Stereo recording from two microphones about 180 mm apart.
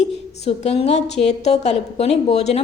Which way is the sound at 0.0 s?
35° left (ahead or behind).